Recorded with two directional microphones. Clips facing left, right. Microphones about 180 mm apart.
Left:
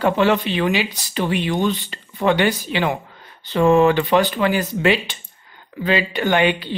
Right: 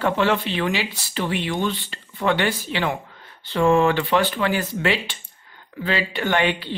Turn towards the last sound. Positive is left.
turn(degrees=15)  # may be behind; listen again after turning